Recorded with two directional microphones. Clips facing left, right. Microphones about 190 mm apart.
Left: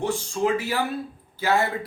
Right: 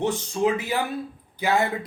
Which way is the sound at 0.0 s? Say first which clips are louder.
Right 1 dB; 20° right (ahead or behind).